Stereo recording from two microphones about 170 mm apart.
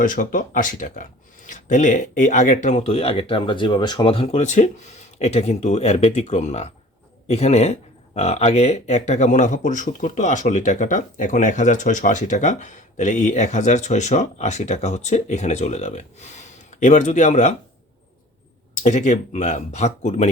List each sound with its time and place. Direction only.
0.0 s speech: 50° left (ahead or behind)
18.8 s speech: 45° left (ahead or behind)